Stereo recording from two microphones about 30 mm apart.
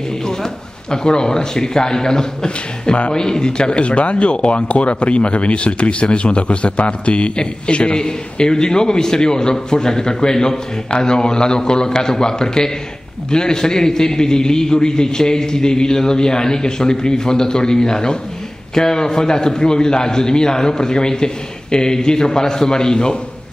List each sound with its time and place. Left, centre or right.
0.3 s a man's voice: left